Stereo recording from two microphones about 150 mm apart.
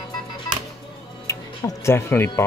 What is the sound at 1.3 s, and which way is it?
Speech, 20° left (ahead or behind).